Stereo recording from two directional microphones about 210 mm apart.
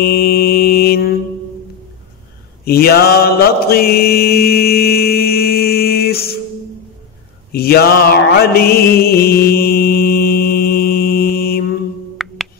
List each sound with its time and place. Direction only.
0.0 s mantra: 45° left (ahead or behind)
2.6 s mantra: 45° left (ahead or behind)
7.5 s mantra: 45° left (ahead or behind)
12.2 s music: centre (ahead or behind)